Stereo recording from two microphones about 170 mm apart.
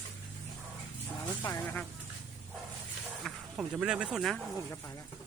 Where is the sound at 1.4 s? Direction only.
20° left (ahead or behind).